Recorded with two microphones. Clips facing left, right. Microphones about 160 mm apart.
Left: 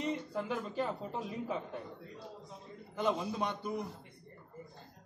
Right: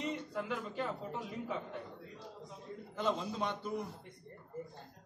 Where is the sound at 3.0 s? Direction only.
15° left (ahead or behind).